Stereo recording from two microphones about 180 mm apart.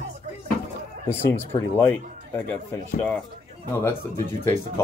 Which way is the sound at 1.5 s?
15° left (ahead or behind).